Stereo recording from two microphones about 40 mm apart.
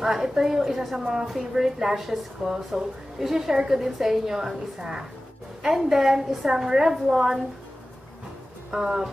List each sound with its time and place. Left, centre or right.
0.0 s a woman's voice: centre
0.9 s a woman's voice: centre
5.6 s a woman's voice: centre
8.7 s a woman's voice: centre